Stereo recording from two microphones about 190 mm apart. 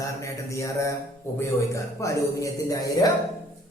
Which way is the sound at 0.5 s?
15° left (ahead or behind).